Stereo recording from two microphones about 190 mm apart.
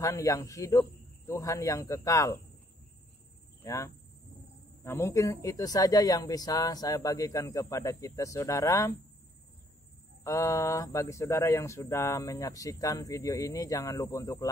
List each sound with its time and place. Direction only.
0.0 s speech: 15° left (ahead or behind)
3.6 s speech: 15° left (ahead or behind)
10.2 s speech: 15° left (ahead or behind)